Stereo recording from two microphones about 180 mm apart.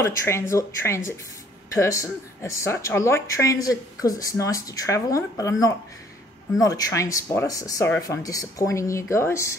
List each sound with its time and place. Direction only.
0.0 s a woman's voice: 15° left (ahead or behind)